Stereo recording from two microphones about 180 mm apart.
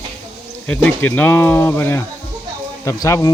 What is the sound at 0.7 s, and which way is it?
Speech, 10° left (ahead or behind).